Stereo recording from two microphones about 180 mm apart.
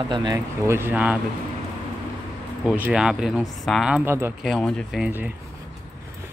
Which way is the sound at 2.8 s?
5° right (ahead or behind).